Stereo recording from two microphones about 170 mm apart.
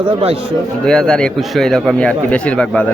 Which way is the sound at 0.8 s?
5° left (ahead or behind).